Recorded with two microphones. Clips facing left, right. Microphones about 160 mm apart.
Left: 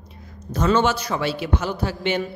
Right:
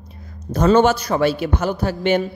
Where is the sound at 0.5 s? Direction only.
40° right (ahead or behind).